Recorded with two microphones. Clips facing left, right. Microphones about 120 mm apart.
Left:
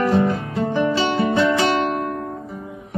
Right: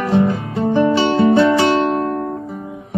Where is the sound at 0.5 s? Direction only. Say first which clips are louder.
Right 7 dB; 25° right (ahead or behind).